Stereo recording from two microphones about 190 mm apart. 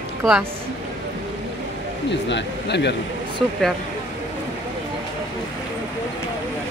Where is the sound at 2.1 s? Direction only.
65° left (ahead or behind).